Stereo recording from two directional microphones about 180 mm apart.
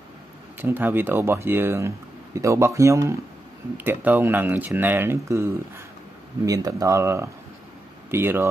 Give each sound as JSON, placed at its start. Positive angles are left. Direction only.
{"t": 0.6, "sound": "speech", "side_deg": -10}